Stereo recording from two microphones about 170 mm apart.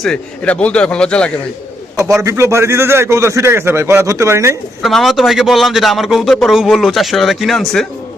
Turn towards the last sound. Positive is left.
turn(degrees=0)  # may be behind; listen again after turning